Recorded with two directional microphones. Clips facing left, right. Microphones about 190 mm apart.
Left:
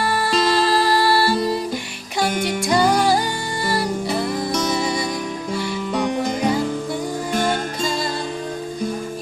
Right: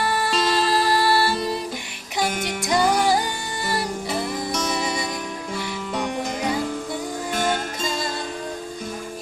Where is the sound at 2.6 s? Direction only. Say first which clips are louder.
Left 2 dB; 20° right (ahead or behind).